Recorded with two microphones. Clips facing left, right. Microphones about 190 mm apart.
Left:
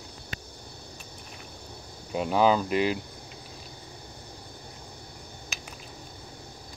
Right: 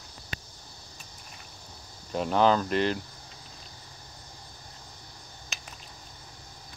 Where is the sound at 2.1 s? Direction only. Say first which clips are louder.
Left 1 dB; 5° left (ahead or behind).